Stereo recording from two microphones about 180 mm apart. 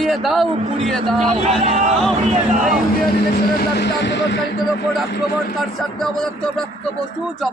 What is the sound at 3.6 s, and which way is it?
Speech, 65° left (ahead or behind).